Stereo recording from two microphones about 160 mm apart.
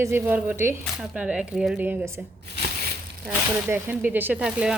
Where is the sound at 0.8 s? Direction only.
Centre (ahead or behind).